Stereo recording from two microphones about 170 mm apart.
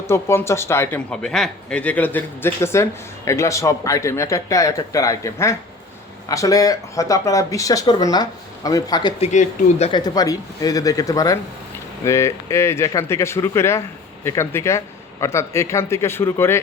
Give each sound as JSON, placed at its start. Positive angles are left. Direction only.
{"t": 0.1, "sound": "speech", "side_deg": 15}
{"t": 9.2, "sound": "speech", "side_deg": 40}
{"t": 9.9, "sound": "speech", "side_deg": 25}